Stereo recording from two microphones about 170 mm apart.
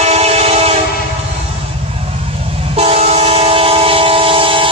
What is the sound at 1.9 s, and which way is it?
Train, 35° right (ahead or behind).